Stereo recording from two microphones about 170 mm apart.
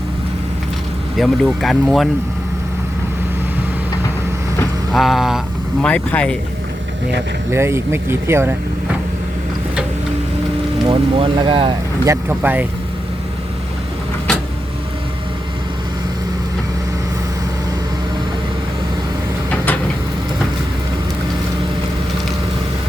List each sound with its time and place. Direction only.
1.1 s speech: centre (ahead or behind)
4.9 s speech: centre (ahead or behind)
7.5 s speech: 15° right (ahead or behind)
10.8 s speech: 30° right (ahead or behind)
12.0 s speech: 15° right (ahead or behind)
14.3 s vehicle: 5° left (ahead or behind)